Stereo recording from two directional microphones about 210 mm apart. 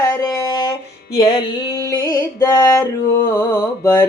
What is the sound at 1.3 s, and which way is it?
Music, 20° left (ahead or behind).